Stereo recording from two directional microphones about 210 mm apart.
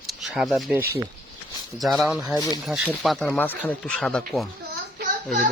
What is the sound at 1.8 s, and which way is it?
Speech, centre (ahead or behind).